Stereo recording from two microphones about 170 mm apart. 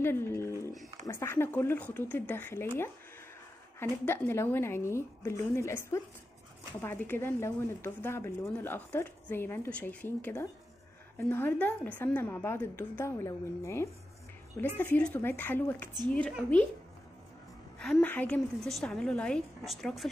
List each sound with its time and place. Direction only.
0.0 s a sound: 15° left (ahead or behind)
1.0 s speech: 15° left (ahead or behind)
17.7 s a woman's voice: 5° left (ahead or behind)